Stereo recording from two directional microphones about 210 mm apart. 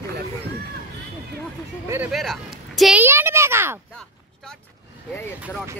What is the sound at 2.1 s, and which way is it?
Speech, centre (ahead or behind).